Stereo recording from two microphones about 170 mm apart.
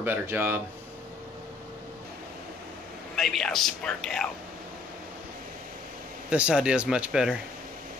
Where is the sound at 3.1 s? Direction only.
Centre (ahead or behind).